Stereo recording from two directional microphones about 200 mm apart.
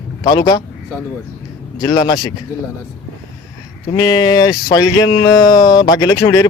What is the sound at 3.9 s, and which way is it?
Speech, 20° left (ahead or behind).